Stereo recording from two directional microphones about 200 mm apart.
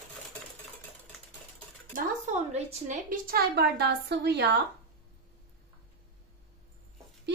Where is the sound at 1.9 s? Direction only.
35° right (ahead or behind); by 4.5 s 55° right (ahead or behind).